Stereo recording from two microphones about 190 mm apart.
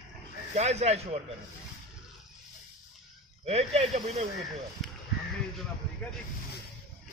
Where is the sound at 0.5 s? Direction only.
35° right (ahead or behind).